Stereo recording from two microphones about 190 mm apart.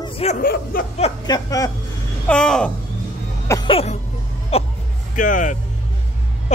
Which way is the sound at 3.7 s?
30° left (ahead or behind).